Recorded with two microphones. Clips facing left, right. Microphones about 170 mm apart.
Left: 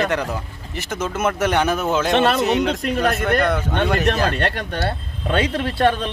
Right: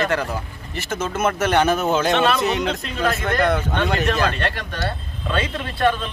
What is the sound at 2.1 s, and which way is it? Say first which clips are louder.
Speech: left 2 dB; 50° left (ahead or behind).